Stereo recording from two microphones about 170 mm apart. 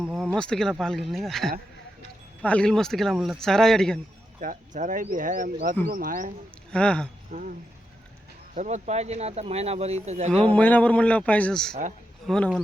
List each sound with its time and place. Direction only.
0.0 s speech: centre (ahead or behind)
4.4 s speech: 50° right (ahead or behind)
6.7 s speech: 5° left (ahead or behind)
7.3 s speech: 55° right (ahead or behind)
8.5 s speech: 45° right (ahead or behind)
10.5 s speech: 10° left (ahead or behind)
11.7 s speech: 50° right (ahead or behind)
12.3 s speech: centre (ahead or behind)